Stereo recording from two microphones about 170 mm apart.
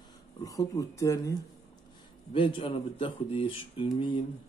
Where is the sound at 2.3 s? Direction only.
30° left (ahead or behind).